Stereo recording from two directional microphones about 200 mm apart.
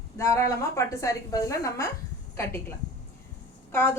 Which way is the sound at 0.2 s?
15° left (ahead or behind).